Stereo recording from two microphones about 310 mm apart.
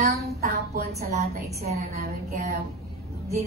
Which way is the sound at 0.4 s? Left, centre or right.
Right.